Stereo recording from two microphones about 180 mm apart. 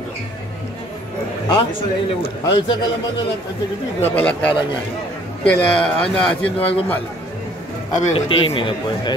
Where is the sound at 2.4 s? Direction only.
25° left (ahead or behind).